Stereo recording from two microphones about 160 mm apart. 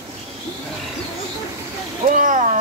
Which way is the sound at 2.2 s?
50° right (ahead or behind).